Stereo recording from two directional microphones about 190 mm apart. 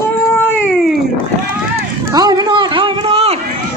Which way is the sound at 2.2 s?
20° right (ahead or behind).